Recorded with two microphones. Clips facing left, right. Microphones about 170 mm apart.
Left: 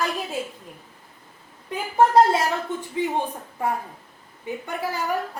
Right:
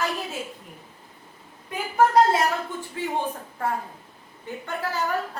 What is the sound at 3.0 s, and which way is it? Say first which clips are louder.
Speech: left 2 dB; 15° left (ahead or behind).